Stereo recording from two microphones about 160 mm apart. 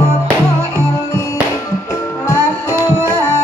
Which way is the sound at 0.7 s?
20° left (ahead or behind).